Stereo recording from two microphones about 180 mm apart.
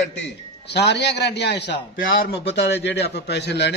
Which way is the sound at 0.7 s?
70° left (ahead or behind).